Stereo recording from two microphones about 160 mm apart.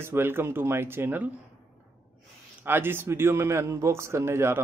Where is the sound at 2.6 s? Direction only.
10° right (ahead or behind).